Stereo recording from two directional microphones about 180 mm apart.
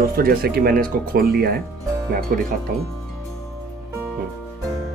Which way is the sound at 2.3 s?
55° right (ahead or behind).